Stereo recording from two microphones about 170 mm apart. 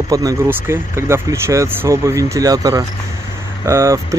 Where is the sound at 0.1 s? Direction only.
20° right (ahead or behind).